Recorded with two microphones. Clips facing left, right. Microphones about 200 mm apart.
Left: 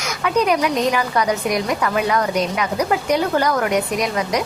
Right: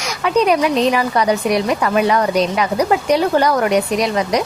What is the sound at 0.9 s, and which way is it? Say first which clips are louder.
A woman's voice: right 3 dB; 30° right (ahead or behind).